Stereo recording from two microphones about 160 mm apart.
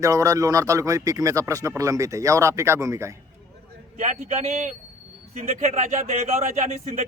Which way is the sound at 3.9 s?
50° right (ahead or behind).